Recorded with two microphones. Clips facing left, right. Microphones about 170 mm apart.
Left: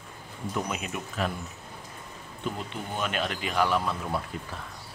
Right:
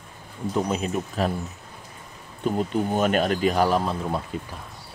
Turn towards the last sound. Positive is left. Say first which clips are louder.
# right 3 dB
turn(degrees=-20)  # may be behind; listen again after turning